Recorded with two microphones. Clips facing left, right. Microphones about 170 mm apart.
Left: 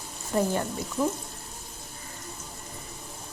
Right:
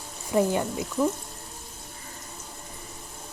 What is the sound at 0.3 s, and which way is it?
Speech, 15° right (ahead or behind).